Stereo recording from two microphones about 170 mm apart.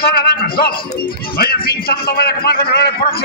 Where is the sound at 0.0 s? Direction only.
65° left (ahead or behind).